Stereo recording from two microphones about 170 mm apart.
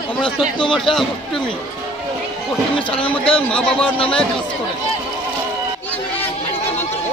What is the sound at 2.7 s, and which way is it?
Speech, 30° left (ahead or behind).